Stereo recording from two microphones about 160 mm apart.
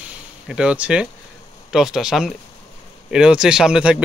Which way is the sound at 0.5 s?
5° right (ahead or behind).